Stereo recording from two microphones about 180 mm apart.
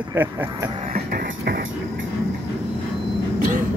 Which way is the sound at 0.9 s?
55° right (ahead or behind).